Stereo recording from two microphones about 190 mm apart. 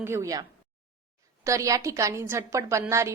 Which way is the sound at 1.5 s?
15° right (ahead or behind).